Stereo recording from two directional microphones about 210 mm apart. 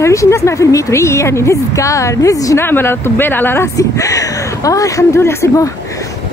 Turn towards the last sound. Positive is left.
turn(degrees=10)  # may be behind; listen again after turning